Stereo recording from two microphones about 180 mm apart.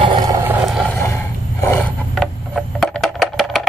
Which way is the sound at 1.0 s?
15° left (ahead or behind).